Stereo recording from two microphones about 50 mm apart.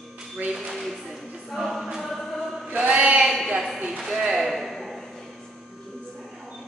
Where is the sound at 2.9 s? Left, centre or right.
Right.